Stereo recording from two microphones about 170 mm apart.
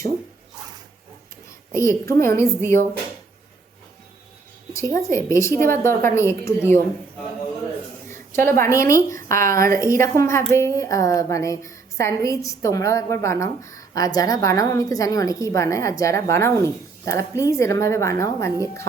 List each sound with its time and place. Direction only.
1.7 s a woman's voice: 15° left (ahead or behind)
4.7 s a woman's voice: 15° left (ahead or behind)
8.0 s a woman's voice: 15° left (ahead or behind)